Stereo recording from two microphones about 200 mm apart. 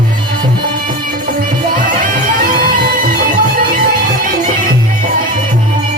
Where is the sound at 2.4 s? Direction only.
45° right (ahead or behind).